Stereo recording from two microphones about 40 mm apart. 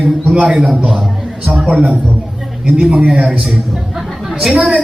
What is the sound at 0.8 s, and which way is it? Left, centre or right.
Speech, right.